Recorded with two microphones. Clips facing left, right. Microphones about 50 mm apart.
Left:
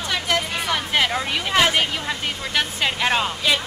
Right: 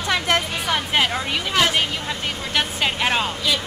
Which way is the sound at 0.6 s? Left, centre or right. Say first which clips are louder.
Right 1 dB; centre.